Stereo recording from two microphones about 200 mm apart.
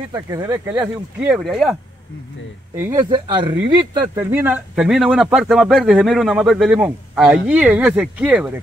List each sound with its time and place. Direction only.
0.1 s speech: 20° right (ahead or behind)
1.2 s speech: 5° right (ahead or behind)
3.0 s speech: 25° right (ahead or behind); by 8.5 s 5° right (ahead or behind)